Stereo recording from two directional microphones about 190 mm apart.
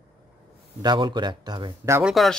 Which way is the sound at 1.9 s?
Centre (ahead or behind).